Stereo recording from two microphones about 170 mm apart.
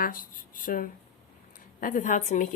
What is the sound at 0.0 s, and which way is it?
A woman's voice, 55° left (ahead or behind).